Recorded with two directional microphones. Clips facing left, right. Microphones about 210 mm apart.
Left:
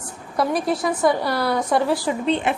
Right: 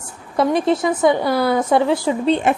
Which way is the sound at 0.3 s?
25° right (ahead or behind).